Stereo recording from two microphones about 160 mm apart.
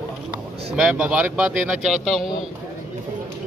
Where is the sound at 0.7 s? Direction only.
5° right (ahead or behind).